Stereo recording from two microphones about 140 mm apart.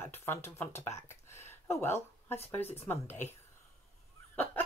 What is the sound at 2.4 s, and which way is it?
Speech, 15° left (ahead or behind).